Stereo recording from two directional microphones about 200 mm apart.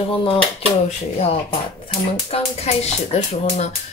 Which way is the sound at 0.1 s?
30° left (ahead or behind).